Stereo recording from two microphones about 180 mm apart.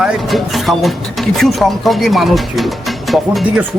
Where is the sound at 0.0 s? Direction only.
Centre (ahead or behind).